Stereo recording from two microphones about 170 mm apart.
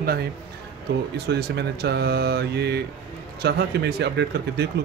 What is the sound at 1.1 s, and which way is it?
Speech, 75° right (ahead or behind).